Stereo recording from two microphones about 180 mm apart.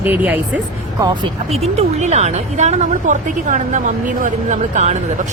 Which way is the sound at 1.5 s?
35° right (ahead or behind).